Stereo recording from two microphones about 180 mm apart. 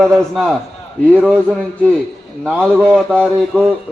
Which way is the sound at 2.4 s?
5° left (ahead or behind).